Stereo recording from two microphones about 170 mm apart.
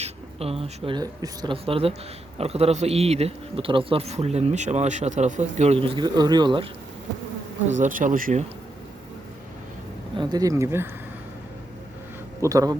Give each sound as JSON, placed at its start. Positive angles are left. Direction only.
{"t": 0.0, "sound": "speech", "side_deg": -35}
{"t": 1.6, "sound": "speech", "side_deg": -35}
{"t": 7.7, "sound": "speech", "side_deg": -50}
{"t": 10.2, "sound": "speech", "side_deg": -25}
{"t": 12.4, "sound": "speech", "side_deg": -20}